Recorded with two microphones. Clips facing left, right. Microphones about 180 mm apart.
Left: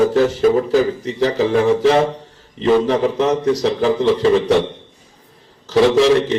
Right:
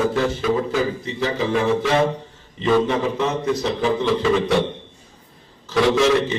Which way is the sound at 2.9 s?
40° left (ahead or behind).